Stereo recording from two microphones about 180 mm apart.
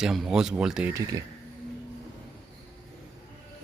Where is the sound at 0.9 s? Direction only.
15° right (ahead or behind).